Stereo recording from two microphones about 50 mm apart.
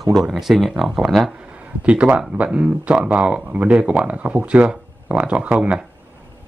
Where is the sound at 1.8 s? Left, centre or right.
Right.